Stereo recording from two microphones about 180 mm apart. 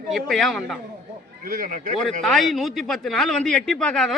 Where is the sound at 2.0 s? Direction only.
Centre (ahead or behind).